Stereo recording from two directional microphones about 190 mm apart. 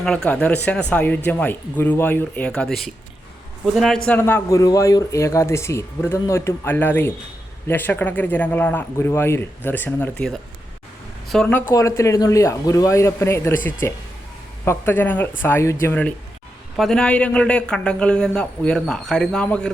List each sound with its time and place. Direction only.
0.0 s a man's voice: 5° left (ahead or behind)
11.7 s a man's voice: 15° left (ahead or behind)